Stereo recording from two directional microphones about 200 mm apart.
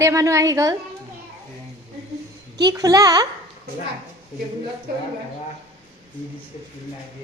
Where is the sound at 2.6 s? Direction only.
20° right (ahead or behind).